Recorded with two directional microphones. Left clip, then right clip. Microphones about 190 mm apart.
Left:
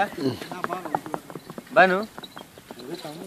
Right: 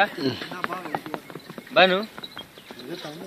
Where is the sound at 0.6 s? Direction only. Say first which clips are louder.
Left 1 dB; 30° right (ahead or behind).